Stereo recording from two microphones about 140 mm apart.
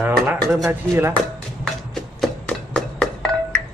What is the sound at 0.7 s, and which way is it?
Speech, 15° right (ahead or behind).